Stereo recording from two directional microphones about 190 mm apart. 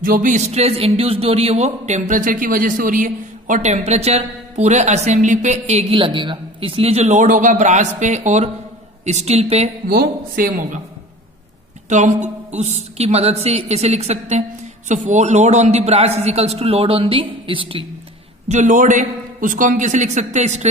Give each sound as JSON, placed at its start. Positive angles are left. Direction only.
{"t": 0.0, "sound": "speech", "side_deg": -45}
{"t": 9.8, "sound": "speech", "side_deg": -50}
{"t": 11.9, "sound": "speech", "side_deg": -40}
{"t": 18.5, "sound": "speech", "side_deg": -40}